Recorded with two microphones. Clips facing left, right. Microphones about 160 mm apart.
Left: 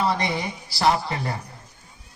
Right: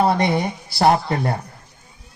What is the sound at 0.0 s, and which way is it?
A man's voice, 55° right (ahead or behind).